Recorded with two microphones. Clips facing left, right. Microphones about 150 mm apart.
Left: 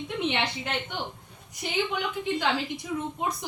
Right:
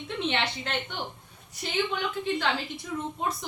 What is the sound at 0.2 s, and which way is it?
A woman's voice, 15° left (ahead or behind).